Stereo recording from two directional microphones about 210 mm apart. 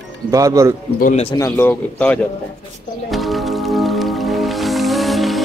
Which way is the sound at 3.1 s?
Centre (ahead or behind).